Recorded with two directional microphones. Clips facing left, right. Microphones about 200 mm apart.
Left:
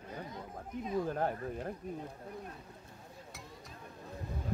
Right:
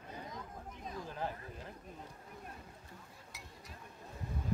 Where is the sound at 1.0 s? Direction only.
55° left (ahead or behind).